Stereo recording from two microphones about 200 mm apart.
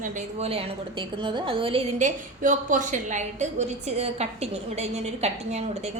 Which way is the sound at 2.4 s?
40° right (ahead or behind).